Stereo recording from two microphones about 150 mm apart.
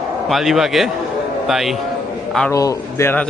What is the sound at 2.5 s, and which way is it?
Speech, 20° left (ahead or behind).